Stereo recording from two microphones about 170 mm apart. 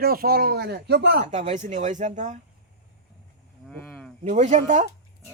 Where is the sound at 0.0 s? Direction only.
60° right (ahead or behind); by 1.2 s 80° right.